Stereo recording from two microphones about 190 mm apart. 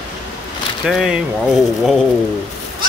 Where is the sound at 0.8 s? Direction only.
Centre (ahead or behind).